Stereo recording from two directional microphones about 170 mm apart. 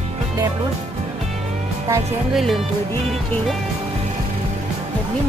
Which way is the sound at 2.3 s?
Centre (ahead or behind).